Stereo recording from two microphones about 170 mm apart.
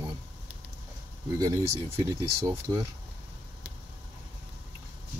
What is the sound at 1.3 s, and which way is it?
Speech, 20° right (ahead or behind).